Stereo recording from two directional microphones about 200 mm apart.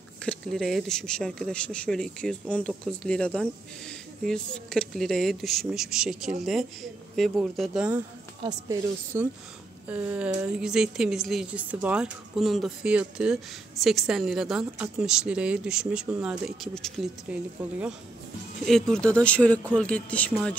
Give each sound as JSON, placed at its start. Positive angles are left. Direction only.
{"t": 0.2, "sound": "speech", "side_deg": 5}
{"t": 8.4, "sound": "speech", "side_deg": -20}
{"t": 18.7, "sound": "speech", "side_deg": 5}